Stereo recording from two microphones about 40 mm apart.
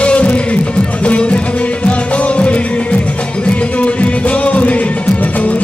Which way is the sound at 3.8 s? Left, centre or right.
Left.